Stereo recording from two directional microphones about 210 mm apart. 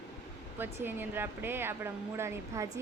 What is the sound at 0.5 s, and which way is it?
Speech, 10° right (ahead or behind).